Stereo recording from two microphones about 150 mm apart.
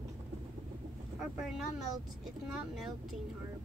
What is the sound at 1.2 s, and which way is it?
Speech, centre (ahead or behind).